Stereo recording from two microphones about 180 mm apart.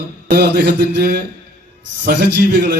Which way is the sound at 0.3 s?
70° right (ahead or behind).